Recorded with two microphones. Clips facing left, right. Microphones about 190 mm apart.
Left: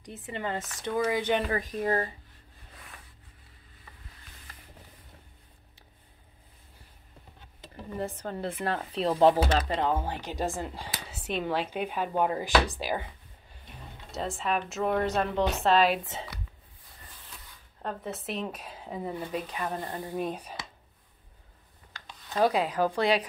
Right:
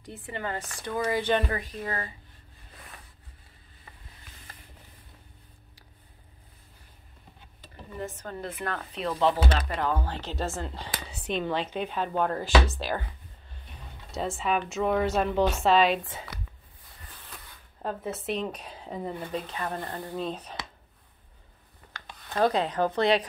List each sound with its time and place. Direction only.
0.0 s a woman's voice: 20° left (ahead or behind)
1.7 s speech: 40° left (ahead or behind)
8.0 s a woman's voice: 35° left (ahead or behind); by 13.0 s 15° left (ahead or behind)
14.1 s a woman's voice: centre (ahead or behind)
17.8 s a woman's voice: centre (ahead or behind)
21.9 s a sound: 55° right (ahead or behind)
22.4 s a woman's voice: 10° left (ahead or behind)